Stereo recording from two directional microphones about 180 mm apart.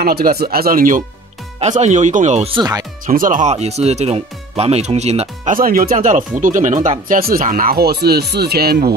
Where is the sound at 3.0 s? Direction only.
50° right (ahead or behind).